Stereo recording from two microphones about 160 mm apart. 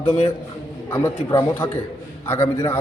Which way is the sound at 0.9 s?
15° left (ahead or behind).